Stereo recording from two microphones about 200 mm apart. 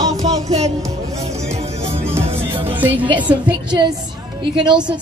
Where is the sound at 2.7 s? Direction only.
10° right (ahead or behind).